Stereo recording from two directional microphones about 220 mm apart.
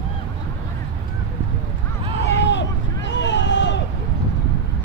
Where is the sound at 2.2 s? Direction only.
55° left (ahead or behind).